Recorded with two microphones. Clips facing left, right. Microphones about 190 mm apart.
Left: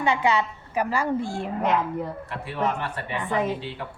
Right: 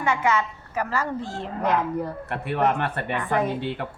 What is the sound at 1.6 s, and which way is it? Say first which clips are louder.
Speech: right 2 dB; centre (ahead or behind).